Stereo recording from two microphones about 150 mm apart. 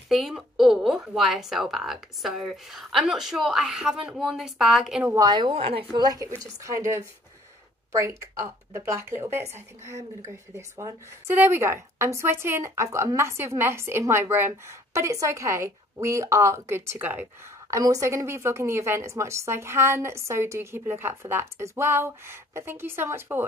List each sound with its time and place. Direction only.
0.1 s speech: centre (ahead or behind)
5.1 s a woman's voice: 25° right (ahead or behind)
6.0 s speech: 25° right (ahead or behind)